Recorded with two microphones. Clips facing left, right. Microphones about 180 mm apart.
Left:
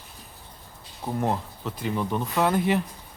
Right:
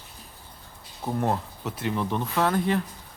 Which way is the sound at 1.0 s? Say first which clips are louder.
Even; centre (ahead or behind).